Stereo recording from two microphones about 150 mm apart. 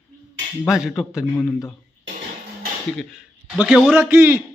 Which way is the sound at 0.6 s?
5° right (ahead or behind).